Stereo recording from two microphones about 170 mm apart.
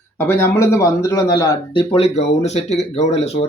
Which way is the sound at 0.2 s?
15° left (ahead or behind).